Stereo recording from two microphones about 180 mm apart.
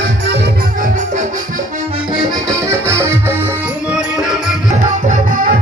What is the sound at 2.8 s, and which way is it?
Music, 15° right (ahead or behind).